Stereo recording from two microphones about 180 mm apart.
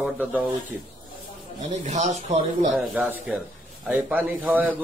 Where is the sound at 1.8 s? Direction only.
40° right (ahead or behind).